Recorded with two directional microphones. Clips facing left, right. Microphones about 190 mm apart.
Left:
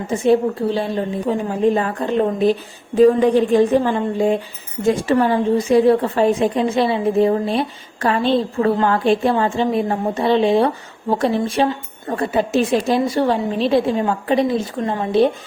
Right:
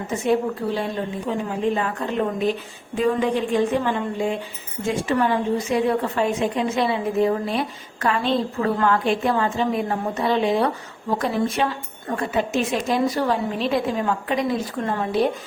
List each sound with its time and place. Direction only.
0.1 s a woman's voice: 30° left (ahead or behind)